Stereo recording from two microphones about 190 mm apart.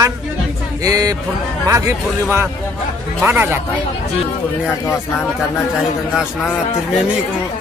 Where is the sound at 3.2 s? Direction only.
10° right (ahead or behind).